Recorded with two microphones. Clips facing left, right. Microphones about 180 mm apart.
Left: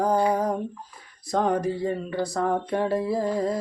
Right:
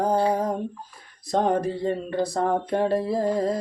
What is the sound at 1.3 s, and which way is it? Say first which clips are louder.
Music: right 1 dB; 30° right (ahead or behind).